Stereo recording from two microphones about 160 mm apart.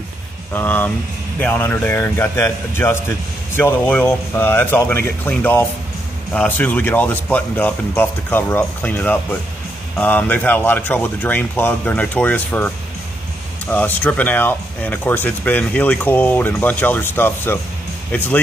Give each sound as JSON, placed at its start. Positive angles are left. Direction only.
{"t": 0.5, "sound": "speech", "side_deg": 15}